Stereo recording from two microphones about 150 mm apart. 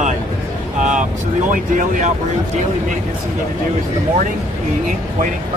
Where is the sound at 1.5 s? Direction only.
60° right (ahead or behind).